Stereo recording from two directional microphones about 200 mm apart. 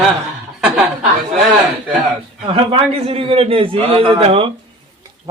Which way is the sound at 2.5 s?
30° right (ahead or behind).